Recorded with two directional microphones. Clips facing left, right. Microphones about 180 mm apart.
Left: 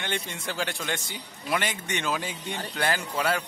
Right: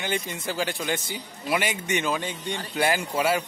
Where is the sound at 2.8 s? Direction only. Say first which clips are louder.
Right 4 dB; 10° right (ahead or behind).